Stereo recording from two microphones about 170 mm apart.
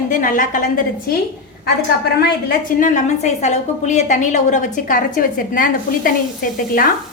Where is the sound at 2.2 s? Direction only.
55° left (ahead or behind).